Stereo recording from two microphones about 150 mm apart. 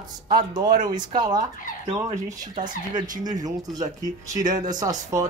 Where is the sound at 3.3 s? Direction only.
25° right (ahead or behind).